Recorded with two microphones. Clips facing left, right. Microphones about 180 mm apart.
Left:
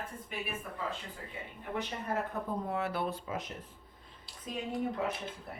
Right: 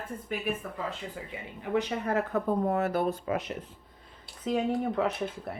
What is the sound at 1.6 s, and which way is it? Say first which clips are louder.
Speech: right 9 dB; 90° right.